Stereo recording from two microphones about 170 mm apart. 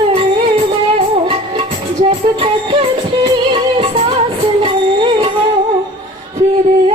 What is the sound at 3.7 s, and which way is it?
Music, 40° right (ahead or behind).